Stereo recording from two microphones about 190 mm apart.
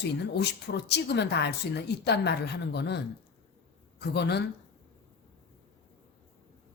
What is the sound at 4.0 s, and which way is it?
Speech, 60° left (ahead or behind).